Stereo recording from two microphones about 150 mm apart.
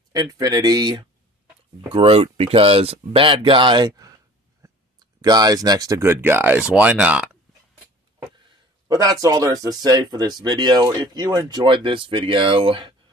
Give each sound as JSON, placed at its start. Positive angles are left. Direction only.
{"t": 0.1, "sound": "speech", "side_deg": -25}
{"t": 2.0, "sound": "speech", "side_deg": -40}
{"t": 8.8, "sound": "speech", "side_deg": -25}